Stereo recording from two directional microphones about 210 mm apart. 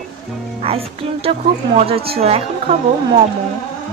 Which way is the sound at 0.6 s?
25° right (ahead or behind).